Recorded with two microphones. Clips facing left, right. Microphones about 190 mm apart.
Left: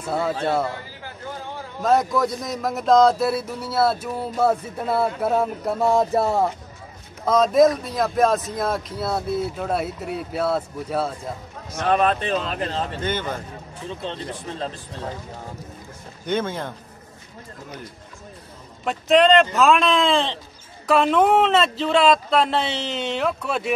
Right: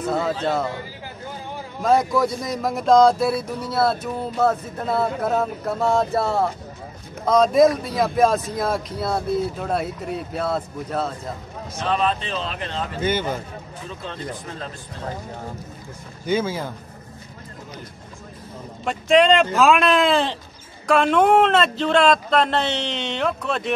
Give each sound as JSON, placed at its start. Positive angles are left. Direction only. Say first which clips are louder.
{"t": 0.2, "sound": "a man's voice", "louder": "even", "side_deg": 10}
{"t": 1.8, "sound": "speech", "louder": "right 1 dB", "side_deg": 0}
{"t": 7.2, "sound": "speech", "louder": "right 1 dB", "side_deg": 0}
{"t": 11.7, "sound": "a man's voice", "louder": "left 3 dB", "side_deg": 55}
{"t": 13.0, "sound": "speech", "louder": "right 7 dB", "side_deg": -10}
{"t": 16.3, "sound": "speech", "louder": "right 2 dB", "side_deg": -5}
{"t": 18.9, "sound": "speech", "louder": "even", "side_deg": 0}